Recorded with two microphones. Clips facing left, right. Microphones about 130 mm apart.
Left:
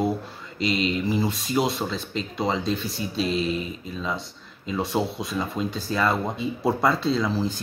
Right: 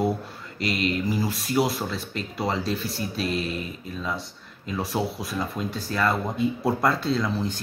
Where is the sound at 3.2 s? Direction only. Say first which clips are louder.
Left 3 dB; 25° left (ahead or behind).